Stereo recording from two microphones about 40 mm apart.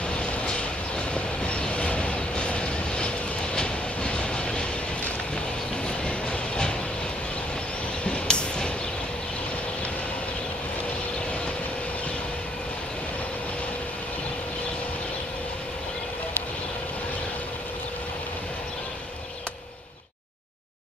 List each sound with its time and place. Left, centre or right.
0.1 s vehicle: left
3.5 s train: left
6.0 s train: left
8.0 s vehicle: left